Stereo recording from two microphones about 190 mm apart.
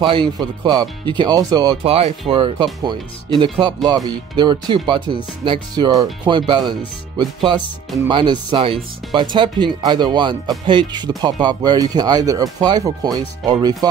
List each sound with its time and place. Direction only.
0.0 s speech: 25° right (ahead or behind)
1.9 s speech: 30° right (ahead or behind)